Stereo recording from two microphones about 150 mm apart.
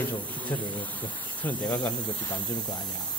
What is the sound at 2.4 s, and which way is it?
Speech, 30° left (ahead or behind).